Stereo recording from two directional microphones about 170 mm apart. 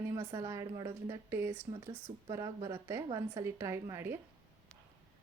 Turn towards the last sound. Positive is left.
turn(degrees=-15)  # may be behind; listen again after turning